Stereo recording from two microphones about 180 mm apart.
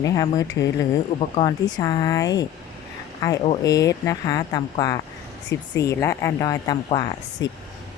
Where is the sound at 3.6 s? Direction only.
20° left (ahead or behind).